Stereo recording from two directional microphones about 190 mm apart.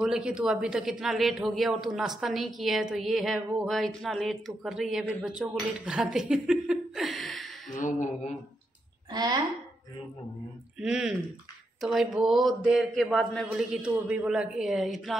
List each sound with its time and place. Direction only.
0.0 s a man's voice: 5° right (ahead or behind)
7.8 s a sound: 45° left (ahead or behind)
9.1 s speech: 20° right (ahead or behind)
10.8 s a man's voice: 5° right (ahead or behind)